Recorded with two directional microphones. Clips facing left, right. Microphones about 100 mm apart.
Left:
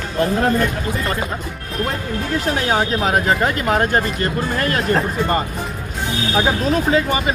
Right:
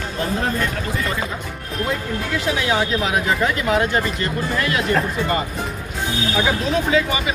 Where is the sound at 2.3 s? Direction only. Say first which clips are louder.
Left 2 dB; 40° left (ahead or behind).